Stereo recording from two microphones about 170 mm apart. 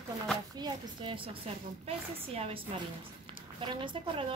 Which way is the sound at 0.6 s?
30° right (ahead or behind).